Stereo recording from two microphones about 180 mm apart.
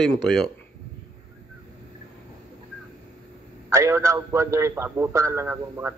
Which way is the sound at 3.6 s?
15° right (ahead or behind).